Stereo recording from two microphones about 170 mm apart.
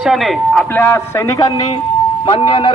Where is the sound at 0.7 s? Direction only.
15° left (ahead or behind).